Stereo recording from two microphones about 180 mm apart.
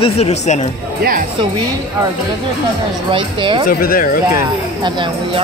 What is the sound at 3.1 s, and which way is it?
Speech, 25° right (ahead or behind).